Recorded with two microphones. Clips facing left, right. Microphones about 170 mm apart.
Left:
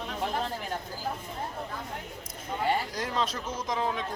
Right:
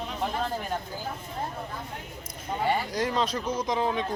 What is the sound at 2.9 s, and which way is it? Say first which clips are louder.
Speech: right 4 dB; centre (ahead or behind).